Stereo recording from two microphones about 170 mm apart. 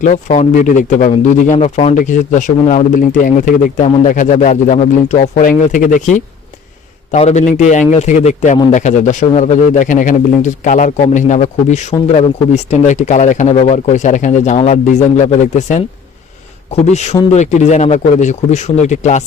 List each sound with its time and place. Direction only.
0.0 s speech: 45° left (ahead or behind)
16.8 s speech: 40° left (ahead or behind)